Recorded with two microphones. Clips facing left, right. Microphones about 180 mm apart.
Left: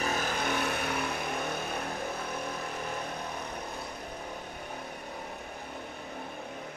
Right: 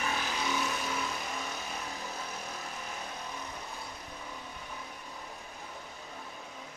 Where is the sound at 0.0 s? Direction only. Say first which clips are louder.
Left 3 dB; 45° left (ahead or behind).